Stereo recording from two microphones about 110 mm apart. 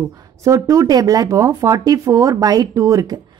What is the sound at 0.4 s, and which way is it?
Speech, 30° right (ahead or behind).